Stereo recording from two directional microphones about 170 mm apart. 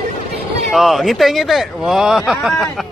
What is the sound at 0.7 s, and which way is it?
Speech, centre (ahead or behind).